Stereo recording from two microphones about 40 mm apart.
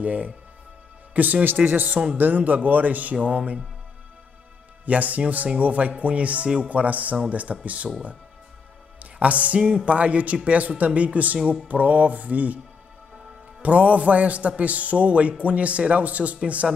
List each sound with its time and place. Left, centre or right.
0.0 s speech: right
1.8 s speech: right
2.1 s speech: right
4.8 s speech: right
9.0 s music: right
9.8 s speech: right
13.6 s speech: right
16.6 s speech: centre